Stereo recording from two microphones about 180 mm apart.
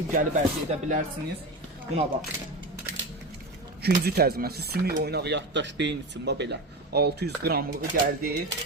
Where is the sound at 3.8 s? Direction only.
60° right (ahead or behind).